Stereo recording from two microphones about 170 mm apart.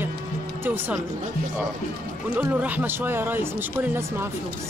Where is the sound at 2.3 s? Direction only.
10° right (ahead or behind).